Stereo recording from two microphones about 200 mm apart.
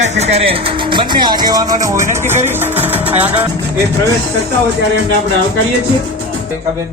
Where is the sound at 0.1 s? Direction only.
35° right (ahead or behind); by 3.3 s 10° right (ahead or behind).